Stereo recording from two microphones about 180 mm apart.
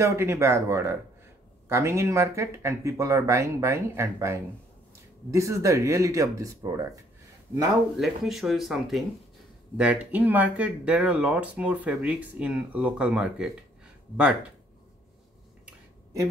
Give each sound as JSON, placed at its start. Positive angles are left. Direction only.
{"t": 0.0, "sound": "speech", "side_deg": -15}
{"t": 8.0, "sound": "speech", "side_deg": 0}